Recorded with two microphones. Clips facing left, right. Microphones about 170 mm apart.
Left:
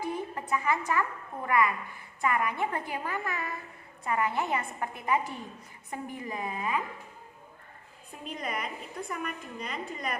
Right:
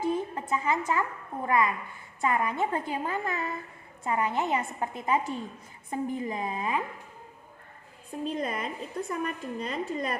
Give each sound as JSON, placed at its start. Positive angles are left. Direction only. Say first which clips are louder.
{"t": 0.0, "sound": "a sound", "louder": "right 5 dB", "side_deg": -25}
{"t": 1.5, "sound": "a woman's voice", "louder": "right 1 dB", "side_deg": -25}
{"t": 8.2, "sound": "a woman's voice", "louder": "right 5 dB", "side_deg": -30}